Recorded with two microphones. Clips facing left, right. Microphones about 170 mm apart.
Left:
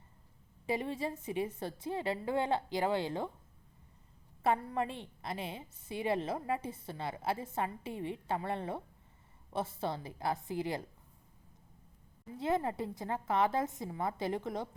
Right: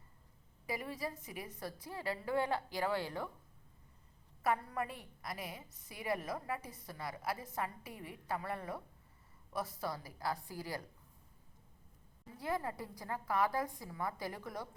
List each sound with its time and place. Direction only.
0.7 s a woman's voice: 25° left (ahead or behind)
4.4 s a woman's voice: 25° left (ahead or behind)
12.4 s a woman's voice: 25° left (ahead or behind)